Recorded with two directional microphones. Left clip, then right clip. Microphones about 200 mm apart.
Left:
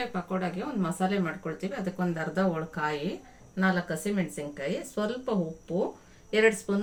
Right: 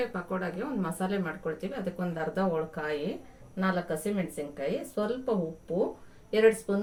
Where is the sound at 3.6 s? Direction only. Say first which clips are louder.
Left 2 dB; 30° left (ahead or behind).